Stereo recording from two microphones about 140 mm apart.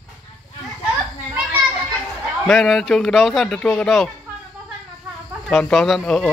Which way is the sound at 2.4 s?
5° left (ahead or behind).